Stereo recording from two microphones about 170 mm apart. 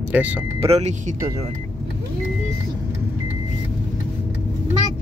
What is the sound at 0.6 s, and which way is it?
Speech, 40° right (ahead or behind).